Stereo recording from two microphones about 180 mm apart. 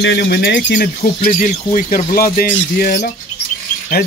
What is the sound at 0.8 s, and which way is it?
Speech, 50° left (ahead or behind).